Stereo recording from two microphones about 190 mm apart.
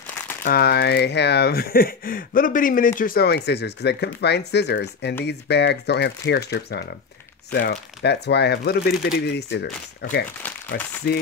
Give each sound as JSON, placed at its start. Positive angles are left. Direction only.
{"t": 0.4, "sound": "speech", "side_deg": 55}
{"t": 11.1, "sound": "speech", "side_deg": 55}